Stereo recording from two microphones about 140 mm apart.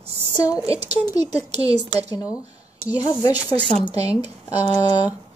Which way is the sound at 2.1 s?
25° left (ahead or behind).